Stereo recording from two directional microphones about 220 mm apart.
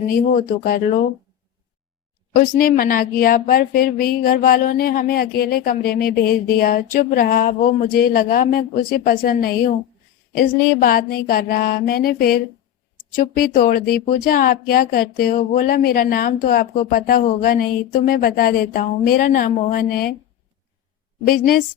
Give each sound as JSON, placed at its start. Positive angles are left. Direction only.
{"t": 0.1, "sound": "speech", "side_deg": 40}
{"t": 2.3, "sound": "speech", "side_deg": 40}
{"t": 21.2, "sound": "speech", "side_deg": 40}